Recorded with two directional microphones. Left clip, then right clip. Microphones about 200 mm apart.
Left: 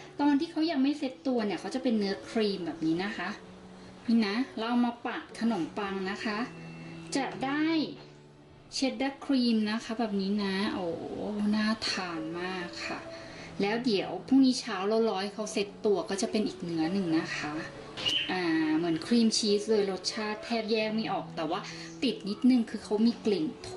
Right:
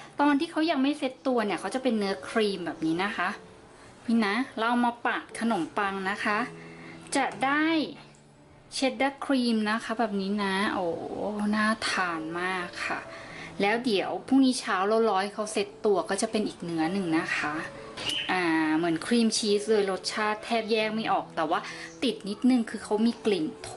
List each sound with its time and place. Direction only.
0.2 s speech: 5° right (ahead or behind)